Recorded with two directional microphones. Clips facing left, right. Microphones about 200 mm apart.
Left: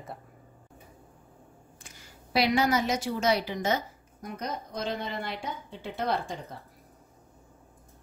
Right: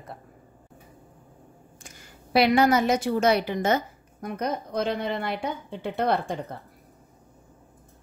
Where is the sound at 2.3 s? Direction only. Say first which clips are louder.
Right 5 dB; 60° right (ahead or behind).